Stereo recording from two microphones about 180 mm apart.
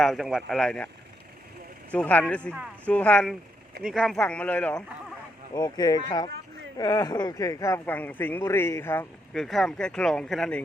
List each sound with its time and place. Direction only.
0.0 s speech: centre (ahead or behind)
1.9 s speech: 10° left (ahead or behind)
5.5 s speech: 20° left (ahead or behind); by 10.6 s centre (ahead or behind)